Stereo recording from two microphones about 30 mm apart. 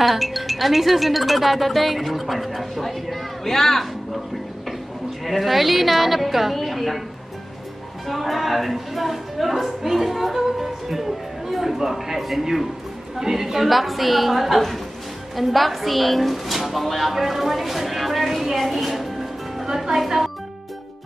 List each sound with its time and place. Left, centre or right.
0.0 s speech: centre
5.2 s speech: centre
8.1 s speech: centre
19.6 s a woman's voice: centre